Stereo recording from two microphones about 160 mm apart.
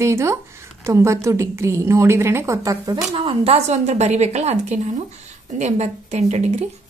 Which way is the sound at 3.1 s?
35° right (ahead or behind).